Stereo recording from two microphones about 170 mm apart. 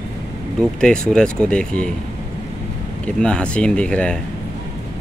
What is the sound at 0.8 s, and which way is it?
A man's voice, 5° left (ahead or behind).